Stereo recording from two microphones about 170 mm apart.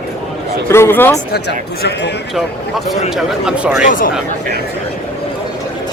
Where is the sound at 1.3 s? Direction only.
75° left (ahead or behind).